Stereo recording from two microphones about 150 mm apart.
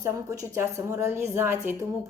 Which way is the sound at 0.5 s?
20° right (ahead or behind).